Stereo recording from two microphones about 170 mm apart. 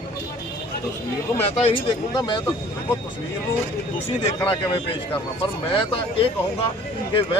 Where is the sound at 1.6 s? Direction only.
30° left (ahead or behind).